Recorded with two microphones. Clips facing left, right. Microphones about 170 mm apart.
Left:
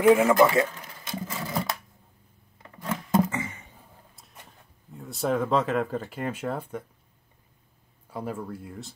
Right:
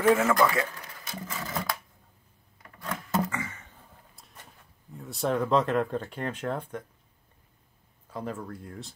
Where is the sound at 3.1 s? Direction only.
20° left (ahead or behind).